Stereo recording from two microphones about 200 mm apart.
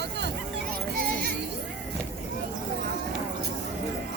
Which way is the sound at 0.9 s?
50° right (ahead or behind).